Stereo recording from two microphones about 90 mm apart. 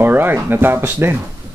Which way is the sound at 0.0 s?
25° right (ahead or behind).